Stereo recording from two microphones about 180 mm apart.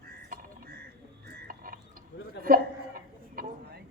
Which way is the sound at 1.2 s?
50° right (ahead or behind).